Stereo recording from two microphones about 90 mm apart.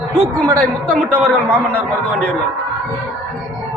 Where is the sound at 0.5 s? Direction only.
15° left (ahead or behind).